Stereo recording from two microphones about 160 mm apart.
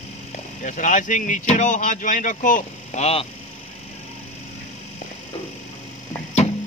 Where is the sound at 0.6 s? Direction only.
50° left (ahead or behind).